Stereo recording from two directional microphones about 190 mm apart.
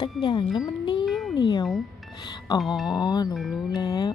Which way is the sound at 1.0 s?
Centre (ahead or behind).